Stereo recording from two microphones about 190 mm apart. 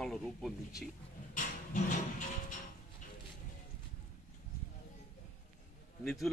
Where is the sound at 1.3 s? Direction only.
40° left (ahead or behind).